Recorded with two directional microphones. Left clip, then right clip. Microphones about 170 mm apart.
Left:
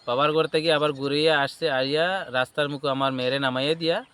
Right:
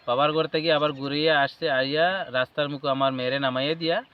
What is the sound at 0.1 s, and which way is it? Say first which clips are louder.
Speech: left 1 dB; 40° left (ahead or behind).